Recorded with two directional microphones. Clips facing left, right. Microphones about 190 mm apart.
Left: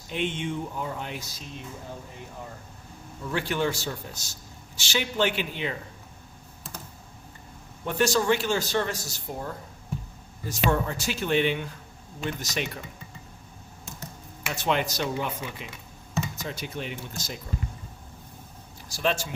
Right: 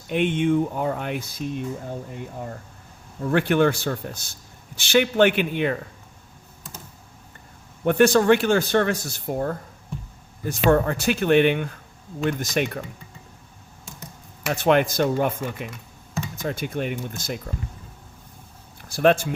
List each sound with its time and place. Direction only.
0.1 s speech: 55° right (ahead or behind)
3.2 s speech: 60° right (ahead or behind)
7.9 s speech: 60° right (ahead or behind)
14.5 s speech: 55° right (ahead or behind)
18.9 s speech: 55° right (ahead or behind)